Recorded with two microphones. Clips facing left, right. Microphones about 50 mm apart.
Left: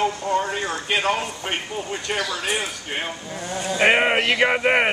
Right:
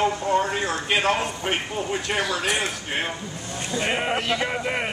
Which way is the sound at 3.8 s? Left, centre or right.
Left.